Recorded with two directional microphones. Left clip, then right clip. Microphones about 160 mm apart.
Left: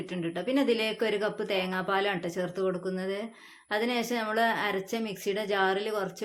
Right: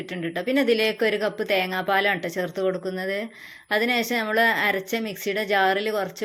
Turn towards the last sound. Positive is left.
turn(degrees=-25)  # may be behind; listen again after turning